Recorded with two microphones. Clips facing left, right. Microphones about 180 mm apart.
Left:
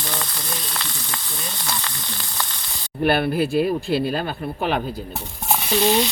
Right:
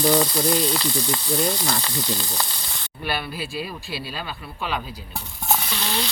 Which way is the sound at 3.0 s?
55° left (ahead or behind).